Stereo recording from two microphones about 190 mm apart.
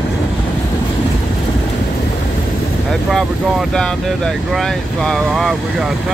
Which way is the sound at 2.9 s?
Centre (ahead or behind).